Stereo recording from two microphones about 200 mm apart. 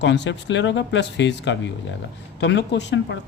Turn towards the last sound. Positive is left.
turn(degrees=60)  # may be behind; listen again after turning